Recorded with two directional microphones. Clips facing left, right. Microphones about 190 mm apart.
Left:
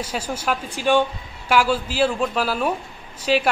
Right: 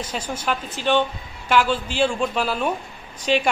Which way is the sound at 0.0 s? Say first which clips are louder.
Left 1 dB; 10° left (ahead or behind).